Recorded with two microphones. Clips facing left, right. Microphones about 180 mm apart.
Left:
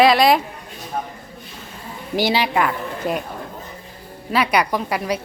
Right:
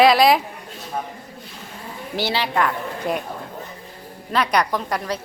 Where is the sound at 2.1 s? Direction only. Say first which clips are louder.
Left 3 dB; 15° left (ahead or behind).